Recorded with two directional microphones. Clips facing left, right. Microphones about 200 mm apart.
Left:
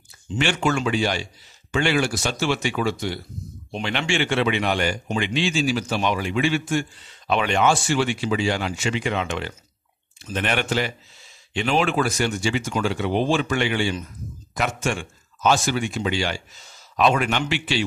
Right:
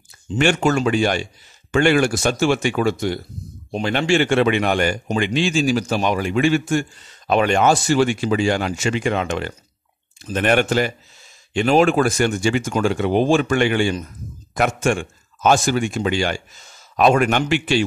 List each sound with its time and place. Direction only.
0.4 s speech: 45° right (ahead or behind)